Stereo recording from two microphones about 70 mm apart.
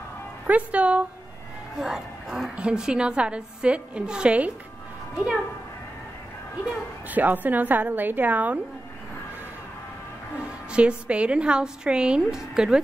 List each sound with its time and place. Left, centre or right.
0.5 s a woman's voice: centre
1.8 s a woman's voice: centre
7.1 s a woman's voice: right
10.7 s a woman's voice: centre